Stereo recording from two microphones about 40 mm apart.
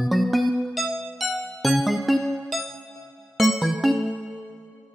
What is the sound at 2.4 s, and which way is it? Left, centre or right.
Music, centre.